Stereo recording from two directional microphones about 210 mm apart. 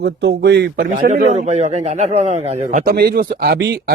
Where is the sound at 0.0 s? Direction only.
55° right (ahead or behind).